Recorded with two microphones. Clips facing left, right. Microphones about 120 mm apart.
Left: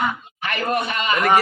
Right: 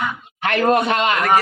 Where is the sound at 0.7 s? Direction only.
70° right (ahead or behind).